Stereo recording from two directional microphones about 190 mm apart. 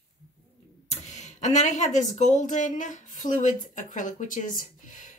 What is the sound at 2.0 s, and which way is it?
Speech, 40° left (ahead or behind).